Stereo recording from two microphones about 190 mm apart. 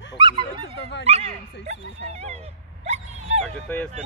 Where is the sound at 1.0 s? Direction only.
35° right (ahead or behind).